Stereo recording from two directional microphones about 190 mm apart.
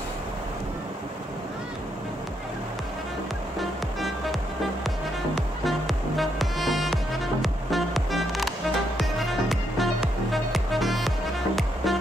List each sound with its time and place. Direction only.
3.5 s music: centre (ahead or behind)